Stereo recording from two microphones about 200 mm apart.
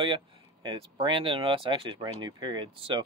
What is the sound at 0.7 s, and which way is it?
Speech, 25° right (ahead or behind).